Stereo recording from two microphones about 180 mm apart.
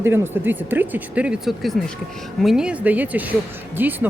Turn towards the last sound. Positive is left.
turn(degrees=-10)  # may be behind; listen again after turning